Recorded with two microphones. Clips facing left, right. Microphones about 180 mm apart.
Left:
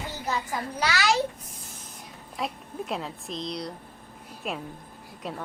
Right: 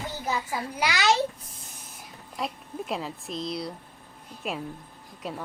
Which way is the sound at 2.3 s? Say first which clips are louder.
Even; centre (ahead or behind).